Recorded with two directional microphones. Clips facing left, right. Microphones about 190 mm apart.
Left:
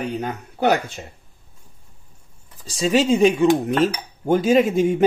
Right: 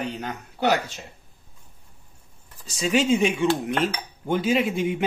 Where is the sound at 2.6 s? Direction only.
30° left (ahead or behind).